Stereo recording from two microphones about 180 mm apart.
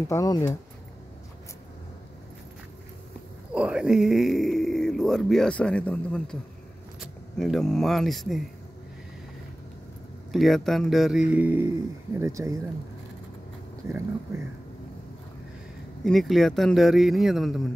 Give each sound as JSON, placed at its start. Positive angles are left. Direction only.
{"t": 0.1, "sound": "speech", "side_deg": 15}
{"t": 3.5, "sound": "speech", "side_deg": -5}
{"t": 10.3, "sound": "speech", "side_deg": 0}
{"t": 13.8, "sound": "speech", "side_deg": -15}
{"t": 16.0, "sound": "speech", "side_deg": 0}